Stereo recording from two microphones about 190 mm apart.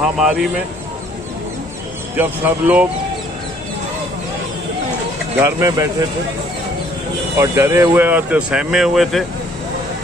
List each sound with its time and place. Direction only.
0.2 s speech: 5° right (ahead or behind)
2.1 s speech: 10° right (ahead or behind)
5.4 s speech: 15° right (ahead or behind)
7.3 s speech: 15° right (ahead or behind)